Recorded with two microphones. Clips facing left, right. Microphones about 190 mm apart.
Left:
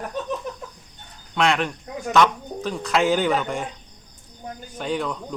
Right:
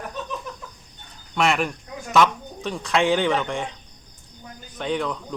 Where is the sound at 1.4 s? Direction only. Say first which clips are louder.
Even; 5° right (ahead or behind).